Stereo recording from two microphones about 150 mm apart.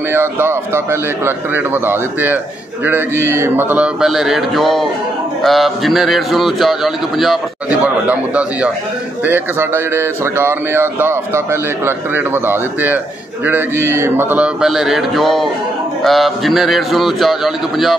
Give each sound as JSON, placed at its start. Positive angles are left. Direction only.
{"t": 0.1, "sound": "a man's voice", "side_deg": -15}